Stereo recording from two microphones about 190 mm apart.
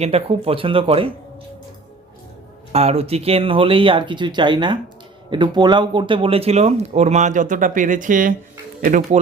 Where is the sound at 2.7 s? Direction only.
30° right (ahead or behind).